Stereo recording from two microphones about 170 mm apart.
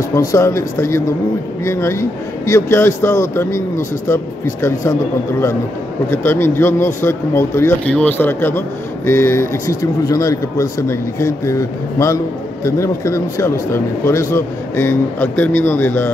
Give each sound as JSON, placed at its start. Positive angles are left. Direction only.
{"t": 0.1, "sound": "speech", "side_deg": 20}
{"t": 6.0, "sound": "speech", "side_deg": 15}